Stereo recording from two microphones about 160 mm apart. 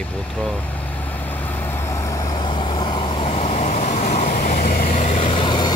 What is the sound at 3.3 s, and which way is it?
Vehicle, 45° left (ahead or behind).